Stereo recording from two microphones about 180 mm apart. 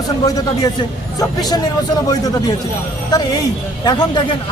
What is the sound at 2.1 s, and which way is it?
Speech, 20° left (ahead or behind).